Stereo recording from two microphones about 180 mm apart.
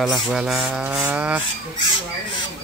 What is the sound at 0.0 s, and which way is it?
Rub, centre (ahead or behind).